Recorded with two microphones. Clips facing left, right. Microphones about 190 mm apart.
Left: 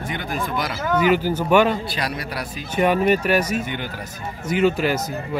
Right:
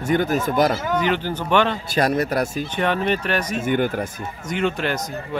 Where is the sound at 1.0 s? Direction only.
5° left (ahead or behind).